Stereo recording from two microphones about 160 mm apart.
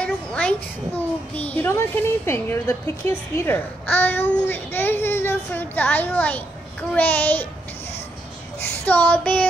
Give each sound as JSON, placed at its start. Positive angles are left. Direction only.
{"t": 0.0, "sound": "a child's voice", "side_deg": 10}
{"t": 8.8, "sound": "a child's voice", "side_deg": 10}